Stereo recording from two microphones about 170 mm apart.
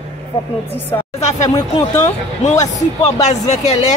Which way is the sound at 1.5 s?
20° left (ahead or behind).